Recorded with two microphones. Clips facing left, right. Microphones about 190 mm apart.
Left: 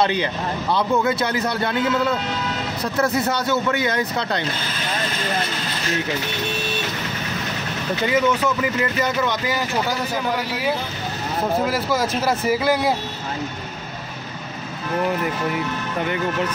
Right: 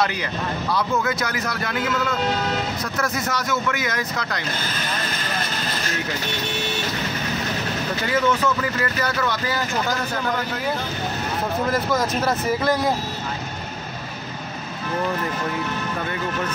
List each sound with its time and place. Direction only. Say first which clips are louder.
0.0 s a man's voice: left 3 dB; 25° left (ahead or behind)
8.1 s speech: left 1 dB; 15° left (ahead or behind)
11.7 s speech: even; 10° left (ahead or behind)